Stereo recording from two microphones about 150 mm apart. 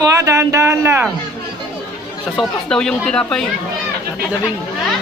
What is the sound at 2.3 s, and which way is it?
Speech, 5° left (ahead or behind).